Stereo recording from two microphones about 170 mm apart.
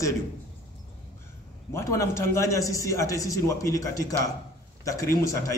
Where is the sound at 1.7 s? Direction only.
15° left (ahead or behind).